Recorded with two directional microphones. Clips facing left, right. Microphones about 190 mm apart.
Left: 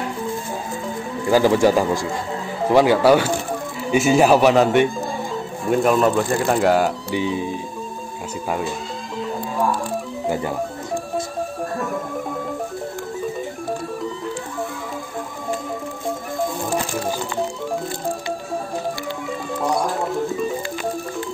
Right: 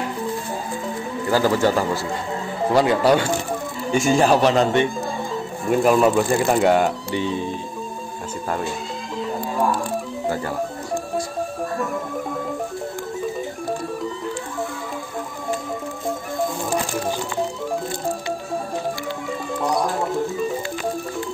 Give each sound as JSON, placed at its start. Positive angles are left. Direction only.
{"t": 1.3, "sound": "speech", "side_deg": 15}
{"t": 19.6, "sound": "music", "side_deg": 0}